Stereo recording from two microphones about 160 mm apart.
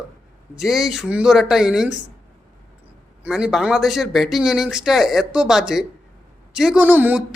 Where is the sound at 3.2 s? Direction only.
5° right (ahead or behind).